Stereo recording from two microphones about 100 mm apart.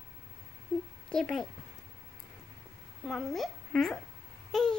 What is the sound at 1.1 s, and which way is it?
Speech, 5° left (ahead or behind).